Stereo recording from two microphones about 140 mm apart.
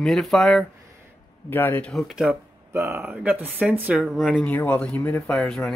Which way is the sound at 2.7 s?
15° right (ahead or behind).